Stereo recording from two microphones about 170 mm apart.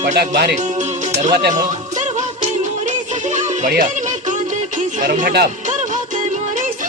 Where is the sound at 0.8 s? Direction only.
45° right (ahead or behind).